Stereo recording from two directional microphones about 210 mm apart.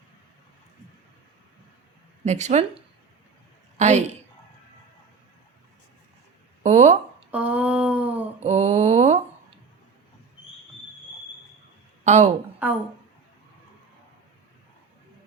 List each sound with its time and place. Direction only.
2.2 s speech: 35° right (ahead or behind)
3.8 s a woman's voice: 35° right (ahead or behind)
6.6 s speech: 35° right (ahead or behind)
7.3 s a sound: 5° right (ahead or behind)
8.4 s a sound: 35° right (ahead or behind)
12.0 s speech: 35° right (ahead or behind)
12.6 s speech: 10° right (ahead or behind)